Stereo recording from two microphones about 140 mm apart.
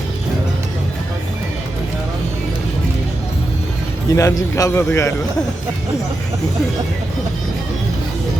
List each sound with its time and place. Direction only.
4.1 s a man's voice: 25° left (ahead or behind)